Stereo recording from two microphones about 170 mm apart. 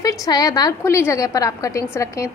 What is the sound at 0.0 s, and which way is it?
A woman's voice, 20° left (ahead or behind).